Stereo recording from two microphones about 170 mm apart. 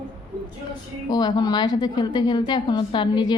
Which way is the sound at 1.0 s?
25° left (ahead or behind).